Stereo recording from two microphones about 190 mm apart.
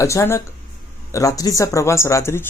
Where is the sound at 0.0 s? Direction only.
15° left (ahead or behind).